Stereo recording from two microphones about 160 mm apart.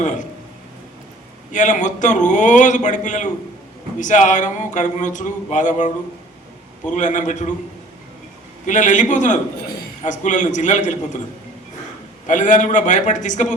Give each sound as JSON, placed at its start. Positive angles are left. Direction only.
{"t": 1.5, "sound": "speech", "side_deg": 50}
{"t": 6.9, "sound": "speech", "side_deg": 50}
{"t": 8.6, "sound": "speech", "side_deg": 50}
{"t": 12.3, "sound": "speech", "side_deg": 50}